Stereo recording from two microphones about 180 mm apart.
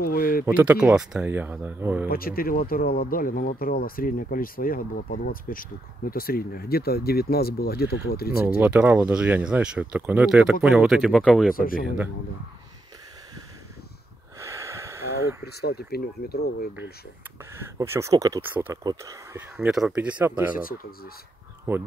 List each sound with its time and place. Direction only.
0.0 s speech: 55° left (ahead or behind)
0.5 s speech: 10° right (ahead or behind)
2.0 s speech: 55° left (ahead or behind)
8.5 s speech: 10° right (ahead or behind)
11.5 s speech: 50° left (ahead or behind)
14.4 s a sound: 15° right (ahead or behind)
15.4 s speech: 65° left (ahead or behind)
17.7 s speech: 15° right (ahead or behind)
19.5 s speech: centre (ahead or behind)
20.5 s speech: 50° left (ahead or behind)
21.7 s speech: 10° right (ahead or behind)